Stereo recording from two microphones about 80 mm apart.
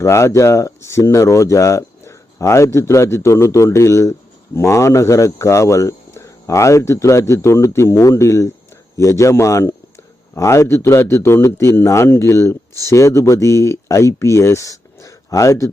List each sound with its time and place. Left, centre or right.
0.0 s speech: left